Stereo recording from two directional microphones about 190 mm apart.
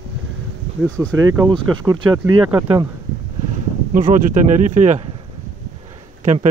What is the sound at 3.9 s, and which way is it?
Speech, 40° right (ahead or behind).